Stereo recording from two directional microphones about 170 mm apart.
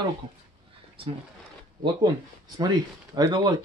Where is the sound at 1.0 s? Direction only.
30° right (ahead or behind).